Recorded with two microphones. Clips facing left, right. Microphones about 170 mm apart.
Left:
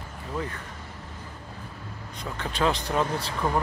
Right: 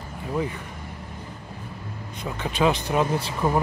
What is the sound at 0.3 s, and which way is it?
Vehicle, 15° right (ahead or behind).